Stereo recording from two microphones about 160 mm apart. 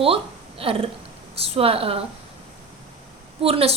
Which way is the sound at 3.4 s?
35° right (ahead or behind).